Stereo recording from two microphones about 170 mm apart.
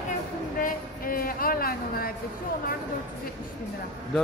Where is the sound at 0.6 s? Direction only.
55° left (ahead or behind).